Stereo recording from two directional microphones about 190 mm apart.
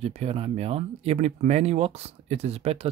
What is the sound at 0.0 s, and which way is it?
Speech, 35° right (ahead or behind).